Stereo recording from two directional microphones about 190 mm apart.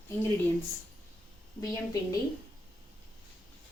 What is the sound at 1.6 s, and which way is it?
Speech, 15° left (ahead or behind).